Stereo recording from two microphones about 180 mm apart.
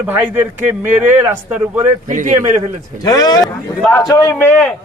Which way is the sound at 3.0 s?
20° left (ahead or behind).